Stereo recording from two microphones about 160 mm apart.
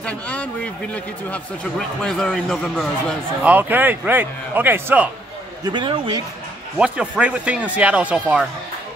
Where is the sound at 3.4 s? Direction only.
10° right (ahead or behind).